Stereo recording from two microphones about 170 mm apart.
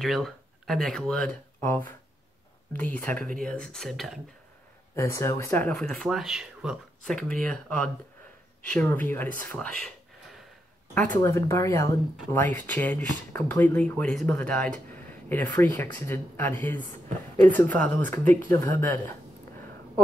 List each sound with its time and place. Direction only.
0.0 s speech: centre (ahead or behind)
4.9 s speech: 15° left (ahead or behind)
5.8 s speech: centre (ahead or behind)
11.1 s speech: 15° left (ahead or behind)